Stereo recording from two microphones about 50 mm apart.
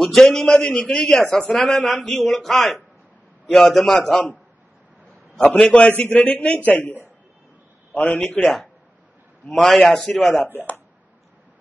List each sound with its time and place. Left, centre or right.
0.0 s a man's voice: centre
1.2 s a man's voice: centre
5.5 s speech: left
9.5 s a man's voice: centre
10.5 s speech: left